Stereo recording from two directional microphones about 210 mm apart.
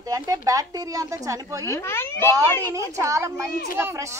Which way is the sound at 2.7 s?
15° right (ahead or behind).